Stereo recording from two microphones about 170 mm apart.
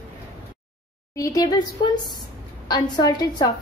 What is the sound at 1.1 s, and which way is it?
A woman's voice, 20° left (ahead or behind).